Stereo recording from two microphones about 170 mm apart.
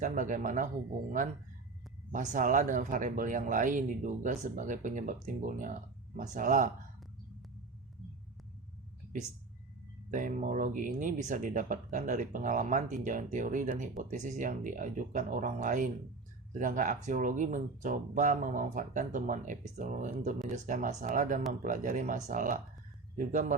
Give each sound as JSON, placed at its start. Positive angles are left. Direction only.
{"t": 0.0, "sound": "speech", "side_deg": -50}
{"t": 2.1, "sound": "speech", "side_deg": -50}
{"t": 10.1, "sound": "speech", "side_deg": -50}